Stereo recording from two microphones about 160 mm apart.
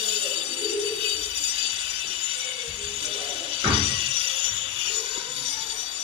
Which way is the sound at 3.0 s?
35° right (ahead or behind).